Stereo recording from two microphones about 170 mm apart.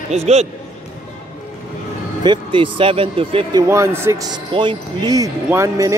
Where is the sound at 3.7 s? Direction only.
15° right (ahead or behind).